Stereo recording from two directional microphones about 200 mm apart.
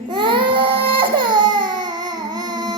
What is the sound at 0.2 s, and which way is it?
Baby cry, 25° right (ahead or behind).